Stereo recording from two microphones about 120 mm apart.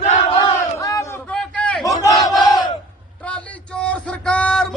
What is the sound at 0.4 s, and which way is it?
Battle cry, 25° left (ahead or behind).